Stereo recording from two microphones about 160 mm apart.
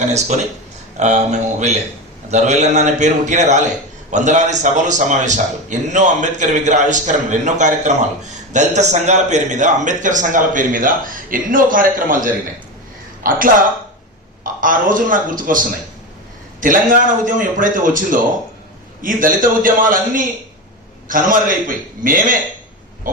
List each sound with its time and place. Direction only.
0.9 s a man's voice: 45° right (ahead or behind)